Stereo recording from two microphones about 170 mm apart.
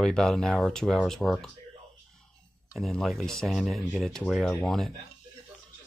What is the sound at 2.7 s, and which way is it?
Speech, centre (ahead or behind).